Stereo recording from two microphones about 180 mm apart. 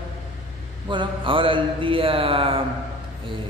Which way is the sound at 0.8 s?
25° right (ahead or behind).